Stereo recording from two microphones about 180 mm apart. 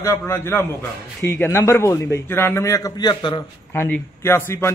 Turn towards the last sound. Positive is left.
turn(degrees=15)  # may be behind; listen again after turning